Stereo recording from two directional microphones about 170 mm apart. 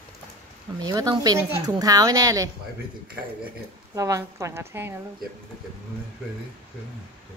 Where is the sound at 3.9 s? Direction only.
20° right (ahead or behind).